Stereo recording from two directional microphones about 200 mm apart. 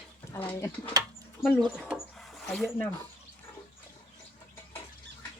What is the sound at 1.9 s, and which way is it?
Wood, centre (ahead or behind).